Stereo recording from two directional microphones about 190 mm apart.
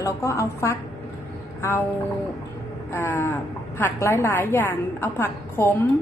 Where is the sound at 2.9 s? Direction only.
10° left (ahead or behind).